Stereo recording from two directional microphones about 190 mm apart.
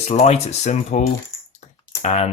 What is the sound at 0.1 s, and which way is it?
Speech, 35° left (ahead or behind).